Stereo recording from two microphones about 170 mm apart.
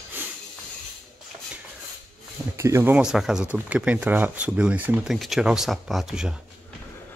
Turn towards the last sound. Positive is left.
turn(degrees=-5)  # may be behind; listen again after turning